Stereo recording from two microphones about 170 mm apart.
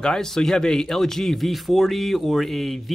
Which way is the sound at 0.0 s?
5° left (ahead or behind).